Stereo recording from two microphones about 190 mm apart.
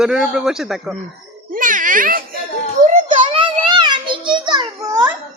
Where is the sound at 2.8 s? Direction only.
45° right (ahead or behind).